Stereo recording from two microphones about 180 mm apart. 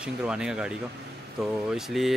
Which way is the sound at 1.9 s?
Centre (ahead or behind).